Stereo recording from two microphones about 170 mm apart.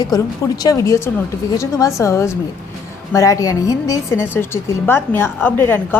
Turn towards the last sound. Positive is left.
turn(degrees=10)  # may be behind; listen again after turning